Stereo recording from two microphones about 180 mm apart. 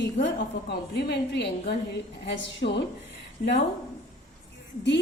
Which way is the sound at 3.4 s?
60° left (ahead or behind).